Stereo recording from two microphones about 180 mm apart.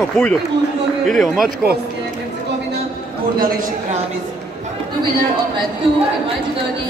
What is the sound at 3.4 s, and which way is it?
Speech, 50° right (ahead or behind).